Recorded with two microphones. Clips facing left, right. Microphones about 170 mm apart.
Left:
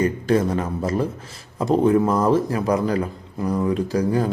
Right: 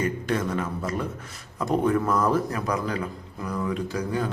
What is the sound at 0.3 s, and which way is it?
A man's voice, 35° left (ahead or behind).